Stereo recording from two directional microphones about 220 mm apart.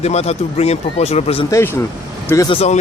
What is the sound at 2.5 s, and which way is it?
Speech, 30° left (ahead or behind).